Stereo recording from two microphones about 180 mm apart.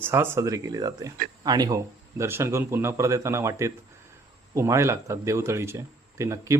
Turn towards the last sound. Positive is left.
turn(degrees=-15)  # may be behind; listen again after turning